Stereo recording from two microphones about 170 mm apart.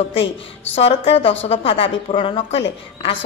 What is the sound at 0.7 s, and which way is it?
A woman's voice, 35° left (ahead or behind).